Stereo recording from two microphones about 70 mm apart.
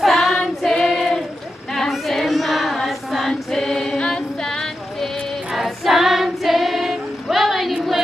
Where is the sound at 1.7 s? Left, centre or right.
Centre.